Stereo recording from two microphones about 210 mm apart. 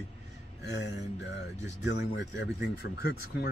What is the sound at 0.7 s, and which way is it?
Speech, 55° left (ahead or behind).